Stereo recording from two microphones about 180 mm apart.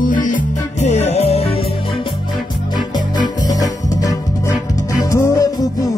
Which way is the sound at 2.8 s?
25° left (ahead or behind).